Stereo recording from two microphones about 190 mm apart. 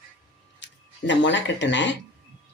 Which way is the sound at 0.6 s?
70° left (ahead or behind).